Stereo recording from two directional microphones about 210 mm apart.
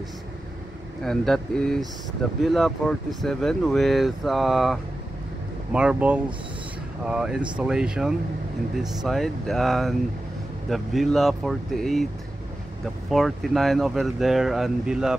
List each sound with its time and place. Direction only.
1.0 s speech: centre (ahead or behind)
13.1 s speech: centre (ahead or behind)